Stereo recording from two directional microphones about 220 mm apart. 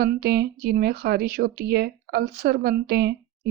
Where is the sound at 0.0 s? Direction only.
45° right (ahead or behind).